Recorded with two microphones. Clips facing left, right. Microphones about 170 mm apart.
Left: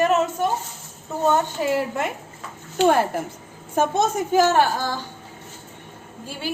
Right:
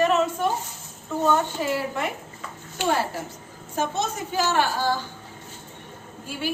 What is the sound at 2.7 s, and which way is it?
A child's voice, 55° left (ahead or behind).